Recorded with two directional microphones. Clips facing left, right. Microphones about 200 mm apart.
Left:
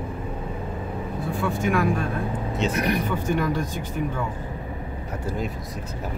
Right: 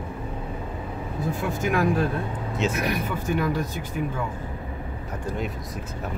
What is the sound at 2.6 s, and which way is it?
Speech, 5° right (ahead or behind).